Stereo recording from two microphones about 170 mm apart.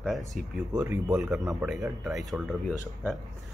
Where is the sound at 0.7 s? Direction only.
15° right (ahead or behind).